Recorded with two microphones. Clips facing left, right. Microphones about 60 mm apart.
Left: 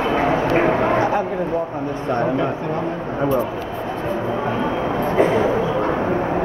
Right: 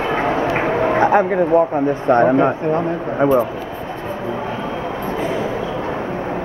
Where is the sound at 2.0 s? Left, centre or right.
Right.